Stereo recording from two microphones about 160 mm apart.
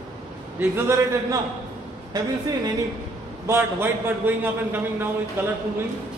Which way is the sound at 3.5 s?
15° right (ahead or behind).